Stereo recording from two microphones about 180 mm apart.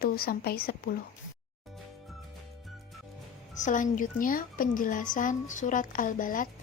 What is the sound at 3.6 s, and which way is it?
A woman's voice, 45° left (ahead or behind).